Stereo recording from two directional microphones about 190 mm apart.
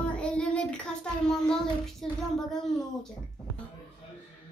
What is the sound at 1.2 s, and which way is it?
A child's voice, 5° left (ahead or behind).